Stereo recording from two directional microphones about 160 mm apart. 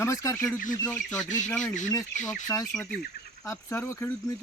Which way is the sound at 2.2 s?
20° left (ahead or behind).